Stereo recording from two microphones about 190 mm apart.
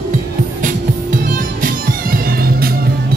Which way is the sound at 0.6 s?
45° right (ahead or behind).